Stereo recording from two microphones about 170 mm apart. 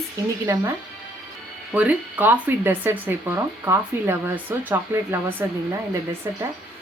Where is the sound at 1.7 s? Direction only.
10° right (ahead or behind).